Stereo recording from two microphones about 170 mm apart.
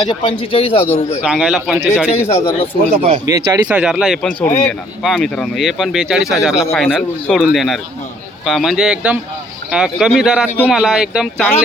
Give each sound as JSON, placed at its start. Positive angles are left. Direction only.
{"t": 0.0, "sound": "speech", "side_deg": 30}
{"t": 1.2, "sound": "speech", "side_deg": -5}
{"t": 2.2, "sound": "a man's voice", "side_deg": 15}
{"t": 2.9, "sound": "speech", "side_deg": -55}
{"t": 3.2, "sound": "speech", "side_deg": -20}
{"t": 3.7, "sound": "speech", "side_deg": -5}